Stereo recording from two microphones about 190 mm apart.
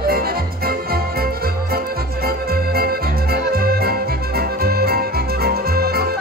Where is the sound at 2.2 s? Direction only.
55° right (ahead or behind).